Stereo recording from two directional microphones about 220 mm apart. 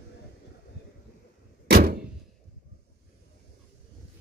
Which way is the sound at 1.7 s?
45° right (ahead or behind).